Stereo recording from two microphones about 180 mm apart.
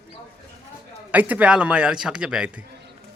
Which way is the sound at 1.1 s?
10° right (ahead or behind).